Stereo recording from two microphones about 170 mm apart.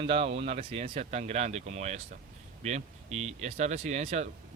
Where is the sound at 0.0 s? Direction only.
35° right (ahead or behind).